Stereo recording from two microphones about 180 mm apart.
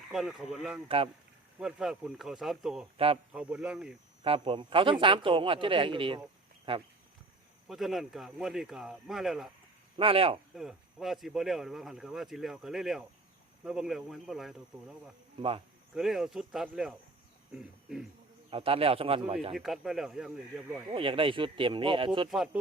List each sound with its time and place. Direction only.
0.1 s speech: centre (ahead or behind)
0.9 s a man's voice: 30° right (ahead or behind)
1.5 s speech: 5° right (ahead or behind)
4.2 s a man's voice: 30° right (ahead or behind)
7.7 s speech: centre (ahead or behind)
10.0 s a man's voice: 30° right (ahead or behind)
10.5 s speech: 5° right (ahead or behind)
15.4 s a man's voice: 30° right (ahead or behind)
16.0 s speech: centre (ahead or behind)
18.5 s a man's voice: 30° right (ahead or behind)
19.5 s speech: centre (ahead or behind)
20.9 s a man's voice: 30° right (ahead or behind)